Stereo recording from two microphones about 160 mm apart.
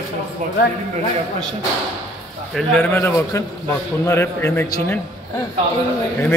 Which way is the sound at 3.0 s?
15° left (ahead or behind).